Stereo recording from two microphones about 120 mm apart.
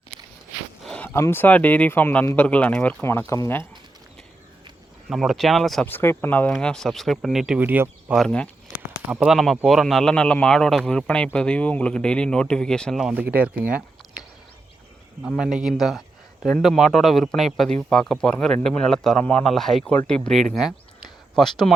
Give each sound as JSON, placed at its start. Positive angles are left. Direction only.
{"t": 0.9, "sound": "speech", "side_deg": 15}
{"t": 5.0, "sound": "a man's voice", "side_deg": 0}
{"t": 5.8, "sound": "speech", "side_deg": 15}
{"t": 6.5, "sound": "a man's voice", "side_deg": 5}
{"t": 7.6, "sound": "speech", "side_deg": -15}
{"t": 8.3, "sound": "speech", "side_deg": 10}
{"t": 9.0, "sound": "a man's voice", "side_deg": -5}
{"t": 13.1, "sound": "speech", "side_deg": -10}
{"t": 15.3, "sound": "a man's voice", "side_deg": -5}